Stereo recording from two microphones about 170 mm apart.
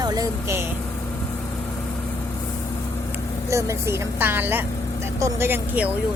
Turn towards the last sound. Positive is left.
turn(degrees=-10)  # may be behind; listen again after turning